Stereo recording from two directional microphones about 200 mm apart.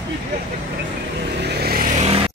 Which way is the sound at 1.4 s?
55° right (ahead or behind).